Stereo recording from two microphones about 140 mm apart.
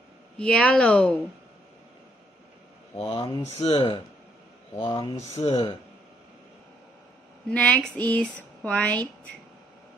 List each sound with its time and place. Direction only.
0.4 s speech: 5° left (ahead or behind)
3.1 s speech: 30° left (ahead or behind)
3.5 s speech: 45° left (ahead or behind)
7.4 s speech: 10° left (ahead or behind)